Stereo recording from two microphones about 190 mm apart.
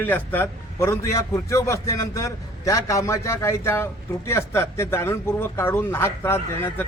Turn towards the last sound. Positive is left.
turn(degrees=15)  # may be behind; listen again after turning